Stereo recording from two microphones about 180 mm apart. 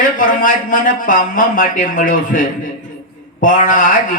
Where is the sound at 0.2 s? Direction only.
45° left (ahead or behind).